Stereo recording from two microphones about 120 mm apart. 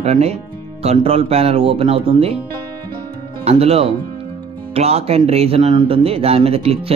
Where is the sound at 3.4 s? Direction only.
60° right (ahead or behind).